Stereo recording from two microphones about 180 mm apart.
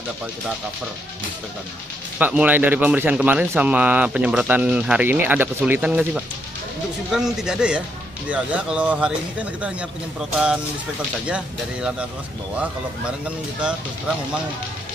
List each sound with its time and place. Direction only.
2.1 s speech: 10° right (ahead or behind)